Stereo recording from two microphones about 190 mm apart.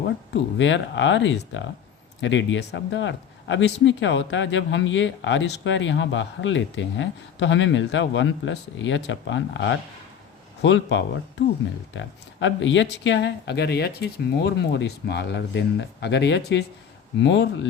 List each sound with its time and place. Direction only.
0.6 s speech: 75° left (ahead or behind)